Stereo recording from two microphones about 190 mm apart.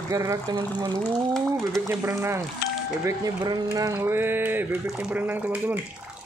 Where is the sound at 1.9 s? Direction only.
10° right (ahead or behind).